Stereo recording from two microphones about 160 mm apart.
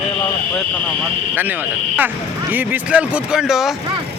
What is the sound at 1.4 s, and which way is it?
A man's voice, 10° right (ahead or behind).